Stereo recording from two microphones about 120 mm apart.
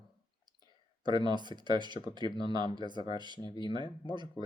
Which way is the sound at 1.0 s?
40° right (ahead or behind).